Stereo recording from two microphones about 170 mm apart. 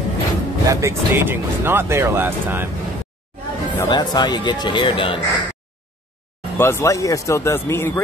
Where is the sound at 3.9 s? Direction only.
25° left (ahead or behind).